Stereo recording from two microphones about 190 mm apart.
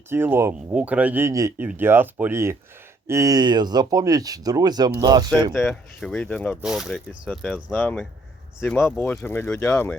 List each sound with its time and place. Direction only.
0.1 s speech: 10° right (ahead or behind)
5.5 s speech: centre (ahead or behind)